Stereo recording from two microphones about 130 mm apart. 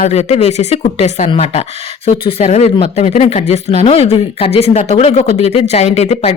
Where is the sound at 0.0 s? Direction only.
55° left (ahead or behind).